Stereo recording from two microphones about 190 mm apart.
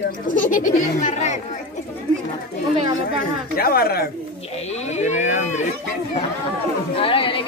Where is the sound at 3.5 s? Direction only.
55° left (ahead or behind).